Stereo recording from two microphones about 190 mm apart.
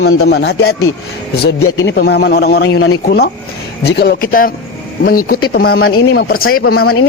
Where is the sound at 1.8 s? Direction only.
60° left (ahead or behind).